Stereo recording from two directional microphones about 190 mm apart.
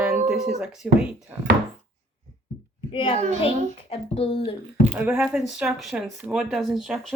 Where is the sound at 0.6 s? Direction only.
5° right (ahead or behind).